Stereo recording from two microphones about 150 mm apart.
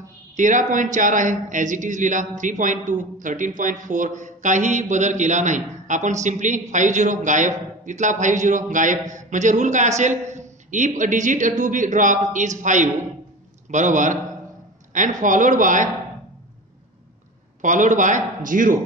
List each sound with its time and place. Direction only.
0.4 s a man's voice: 55° right (ahead or behind)
17.6 s a man's voice: 55° right (ahead or behind)